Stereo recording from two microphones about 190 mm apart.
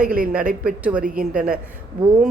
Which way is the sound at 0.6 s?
5° right (ahead or behind).